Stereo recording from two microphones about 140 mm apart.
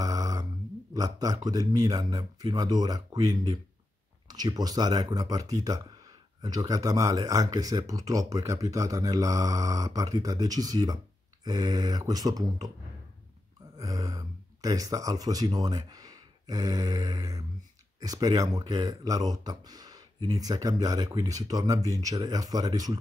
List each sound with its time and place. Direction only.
0.0 s a sound: 25° right (ahead or behind)
0.9 s speech: 25° right (ahead or behind)
13.7 s speech: 25° right (ahead or behind)